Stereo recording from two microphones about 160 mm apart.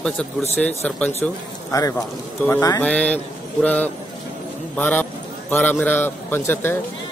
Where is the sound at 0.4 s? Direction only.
10° left (ahead or behind).